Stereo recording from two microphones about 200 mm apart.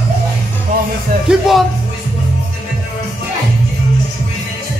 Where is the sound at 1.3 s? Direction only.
Centre (ahead or behind).